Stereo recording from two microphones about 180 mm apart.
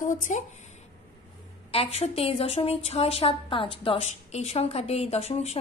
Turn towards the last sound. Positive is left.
turn(degrees=35)  # may be behind; listen again after turning